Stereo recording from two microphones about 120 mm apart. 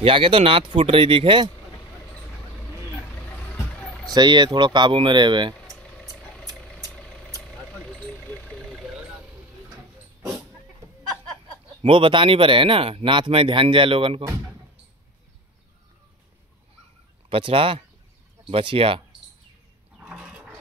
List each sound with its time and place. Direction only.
0.0 s speech: 45° right (ahead or behind)
3.2 s vehicle: 15° left (ahead or behind)
4.1 s speech: 40° right (ahead or behind)
5.7 s a sound: 10° left (ahead or behind)
6.1 s vehicle: 10° left (ahead or behind)
8.2 s vehicle: 10° left (ahead or behind)
8.5 s vehicle: 5° right (ahead or behind)
11.8 s speech: 45° right (ahead or behind)
17.3 s speech: 50° right (ahead or behind)
20.0 s a sound: 10° right (ahead or behind)